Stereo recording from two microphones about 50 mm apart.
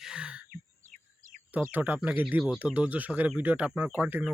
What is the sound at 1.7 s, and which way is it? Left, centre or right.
Speech, right.